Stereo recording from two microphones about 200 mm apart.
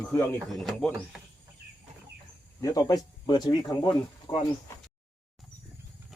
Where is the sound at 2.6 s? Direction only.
20° left (ahead or behind).